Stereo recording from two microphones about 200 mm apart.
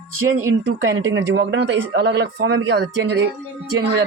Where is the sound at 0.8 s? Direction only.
70° right (ahead or behind).